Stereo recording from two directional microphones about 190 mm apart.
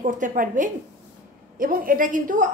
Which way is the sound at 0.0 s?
45° right (ahead or behind).